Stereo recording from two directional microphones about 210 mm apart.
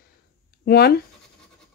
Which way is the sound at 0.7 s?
50° left (ahead or behind).